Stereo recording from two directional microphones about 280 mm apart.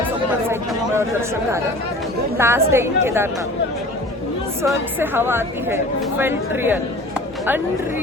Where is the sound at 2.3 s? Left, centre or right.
Centre.